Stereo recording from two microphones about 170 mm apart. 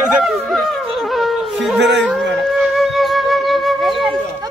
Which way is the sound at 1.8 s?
90° right.